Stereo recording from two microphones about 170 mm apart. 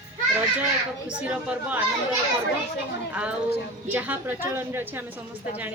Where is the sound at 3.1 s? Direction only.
5° right (ahead or behind).